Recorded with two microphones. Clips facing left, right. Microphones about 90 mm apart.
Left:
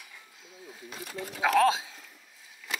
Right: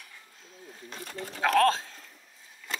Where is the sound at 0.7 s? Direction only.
5° left (ahead or behind).